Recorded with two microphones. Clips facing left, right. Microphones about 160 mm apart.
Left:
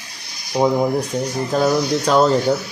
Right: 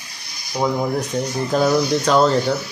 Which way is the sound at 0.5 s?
15° left (ahead or behind).